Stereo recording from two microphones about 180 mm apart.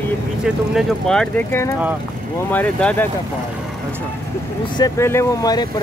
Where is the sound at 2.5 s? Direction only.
10° left (ahead or behind).